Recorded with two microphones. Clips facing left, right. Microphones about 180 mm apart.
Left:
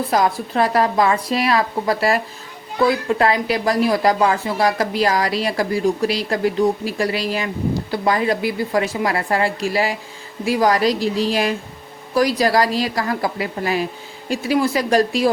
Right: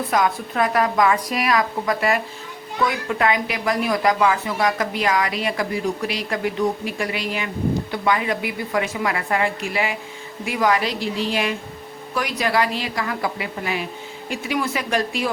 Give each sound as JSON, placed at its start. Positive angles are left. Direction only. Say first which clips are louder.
{"t": 0.1, "sound": "a woman's voice", "louder": "left 2 dB", "side_deg": 35}